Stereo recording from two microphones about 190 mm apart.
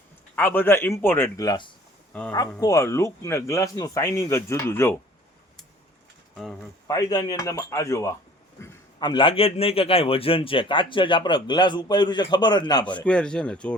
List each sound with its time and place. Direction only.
0.3 s speech: 10° left (ahead or behind)
2.1 s speech: 5° left (ahead or behind)
2.6 s speech: 15° left (ahead or behind)
6.3 s speech: centre (ahead or behind)
6.8 s a man's voice: 20° left (ahead or behind)
12.8 s speech: 5° left (ahead or behind)